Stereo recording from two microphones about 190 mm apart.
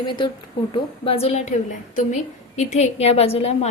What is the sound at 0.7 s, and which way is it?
A woman's voice, 30° left (ahead or behind).